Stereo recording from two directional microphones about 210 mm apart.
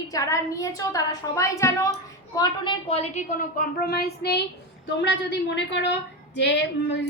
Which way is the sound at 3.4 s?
45° left (ahead or behind).